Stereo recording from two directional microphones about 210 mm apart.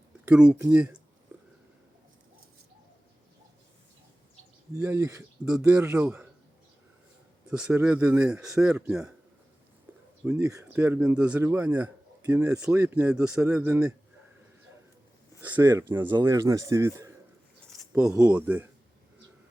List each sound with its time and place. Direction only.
0.3 s speech: 5° right (ahead or behind)
4.7 s speech: 10° right (ahead or behind)
7.5 s speech: 5° right (ahead or behind)
10.4 s speech: 15° right (ahead or behind)
15.4 s speech: 10° right (ahead or behind)